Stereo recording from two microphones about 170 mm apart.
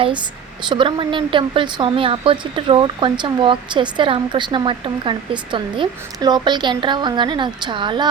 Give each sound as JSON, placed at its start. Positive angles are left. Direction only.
{"t": 0.0, "sound": "speech", "side_deg": -30}